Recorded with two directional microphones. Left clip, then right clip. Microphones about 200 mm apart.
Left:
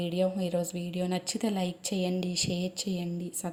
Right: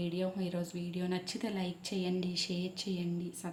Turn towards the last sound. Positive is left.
turn(degrees=25)  # may be behind; listen again after turning